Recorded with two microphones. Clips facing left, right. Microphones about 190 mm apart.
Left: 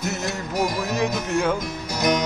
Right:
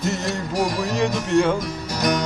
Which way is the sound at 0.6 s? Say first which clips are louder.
Right 1 dB; 5° left (ahead or behind).